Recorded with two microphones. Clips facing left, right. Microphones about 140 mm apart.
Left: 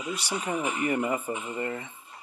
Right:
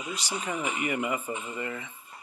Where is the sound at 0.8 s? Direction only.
40° left (ahead or behind).